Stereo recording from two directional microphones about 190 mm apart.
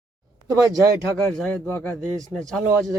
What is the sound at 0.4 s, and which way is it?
Speech, 20° right (ahead or behind).